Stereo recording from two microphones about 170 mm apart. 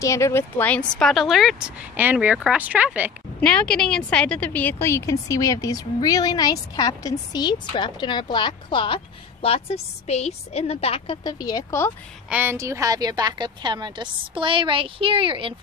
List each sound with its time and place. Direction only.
0.0 s a woman's voice: 15° left (ahead or behind); by 3.1 s 10° right (ahead or behind)
3.3 s a woman's voice: 5° left (ahead or behind); by 11.3 s 35° left (ahead or behind)
11.3 s a woman's voice: 20° left (ahead or behind)
12.3 s a woman's voice: 10° right (ahead or behind); by 15.5 s 30° right (ahead or behind)